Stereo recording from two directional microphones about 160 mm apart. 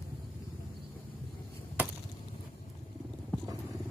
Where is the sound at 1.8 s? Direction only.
10° right (ahead or behind).